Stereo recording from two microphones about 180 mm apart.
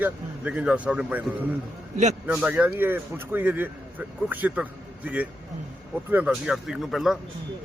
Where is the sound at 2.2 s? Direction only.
5° right (ahead or behind).